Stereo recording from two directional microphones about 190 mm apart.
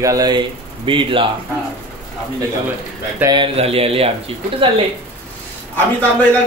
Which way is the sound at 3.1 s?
20° right (ahead or behind).